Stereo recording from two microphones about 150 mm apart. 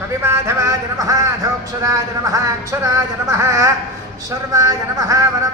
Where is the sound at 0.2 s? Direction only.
15° right (ahead or behind).